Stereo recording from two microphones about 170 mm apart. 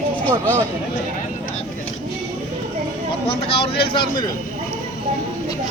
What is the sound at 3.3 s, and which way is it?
Vehicle, 35° left (ahead or behind).